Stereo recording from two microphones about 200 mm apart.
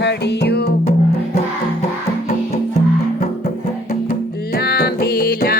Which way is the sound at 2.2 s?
35° left (ahead or behind).